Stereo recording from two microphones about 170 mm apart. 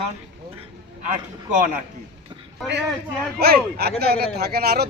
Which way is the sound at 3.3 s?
70° right (ahead or behind).